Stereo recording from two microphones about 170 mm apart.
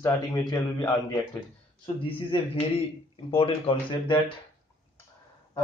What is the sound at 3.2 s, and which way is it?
Speech, 35° left (ahead or behind).